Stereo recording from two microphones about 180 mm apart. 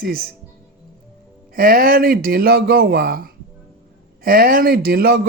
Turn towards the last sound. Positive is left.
turn(degrees=-60)  # may be behind; listen again after turning